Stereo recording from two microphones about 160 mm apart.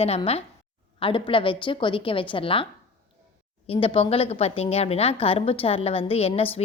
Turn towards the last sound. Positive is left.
turn(degrees=40)  # may be behind; listen again after turning